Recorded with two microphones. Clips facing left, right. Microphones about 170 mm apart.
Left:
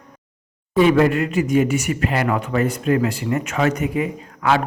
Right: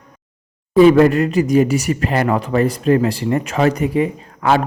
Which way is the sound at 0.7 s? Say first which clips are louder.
Right 5 dB; 35° right (ahead or behind).